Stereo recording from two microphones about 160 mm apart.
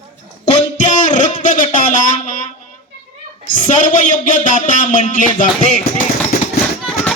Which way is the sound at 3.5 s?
55° left (ahead or behind).